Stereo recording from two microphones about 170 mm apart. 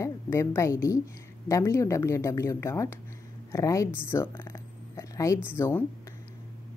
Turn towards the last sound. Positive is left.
turn(degrees=15)  # may be behind; listen again after turning